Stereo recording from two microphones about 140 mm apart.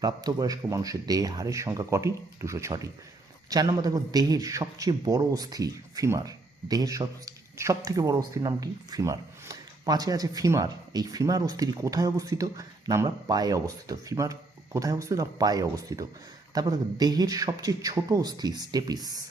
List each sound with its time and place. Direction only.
0.0 s speech: 25° right (ahead or behind)